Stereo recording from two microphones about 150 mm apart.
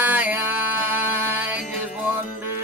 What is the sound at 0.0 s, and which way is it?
Music, 10° right (ahead or behind).